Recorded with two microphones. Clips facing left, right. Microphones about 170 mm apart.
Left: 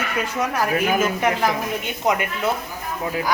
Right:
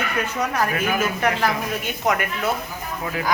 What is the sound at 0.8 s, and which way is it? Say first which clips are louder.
Speech: left 2 dB; 20° left (ahead or behind).